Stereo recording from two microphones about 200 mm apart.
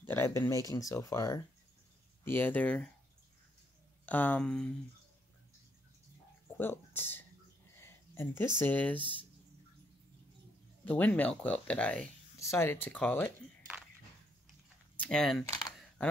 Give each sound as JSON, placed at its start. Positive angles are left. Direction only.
{"t": 0.0, "sound": "speech", "side_deg": 10}
{"t": 4.0, "sound": "speech", "side_deg": 10}
{"t": 6.5, "sound": "speech", "side_deg": 10}
{"t": 7.8, "sound": "a sound", "side_deg": 10}
{"t": 8.5, "sound": "speech", "side_deg": 10}
{"t": 10.9, "sound": "speech", "side_deg": 10}
{"t": 15.0, "sound": "speech", "side_deg": 5}